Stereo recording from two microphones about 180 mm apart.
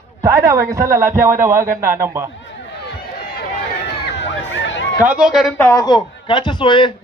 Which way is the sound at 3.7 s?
80° left.